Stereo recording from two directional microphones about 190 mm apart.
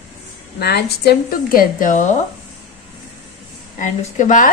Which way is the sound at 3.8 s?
40° left (ahead or behind).